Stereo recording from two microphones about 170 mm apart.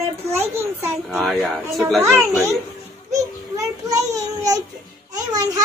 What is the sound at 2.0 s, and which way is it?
Speech, 15° right (ahead or behind).